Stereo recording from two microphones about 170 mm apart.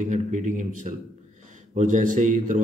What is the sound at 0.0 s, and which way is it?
A man's voice, 45° right (ahead or behind).